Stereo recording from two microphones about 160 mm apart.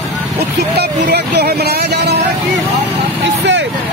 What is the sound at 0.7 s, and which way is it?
Vehicle, 90° right.